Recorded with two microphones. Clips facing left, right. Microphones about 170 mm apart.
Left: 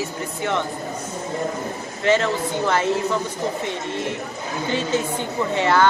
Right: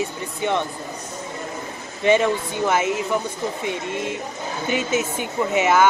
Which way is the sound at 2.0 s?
15° right (ahead or behind).